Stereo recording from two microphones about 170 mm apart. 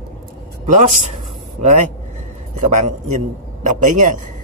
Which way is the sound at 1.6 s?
40° right (ahead or behind).